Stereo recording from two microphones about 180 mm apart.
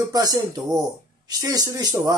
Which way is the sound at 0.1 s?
20° right (ahead or behind).